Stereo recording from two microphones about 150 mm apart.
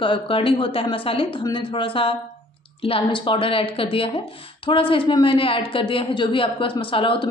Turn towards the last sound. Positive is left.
turn(degrees=35)  # may be behind; listen again after turning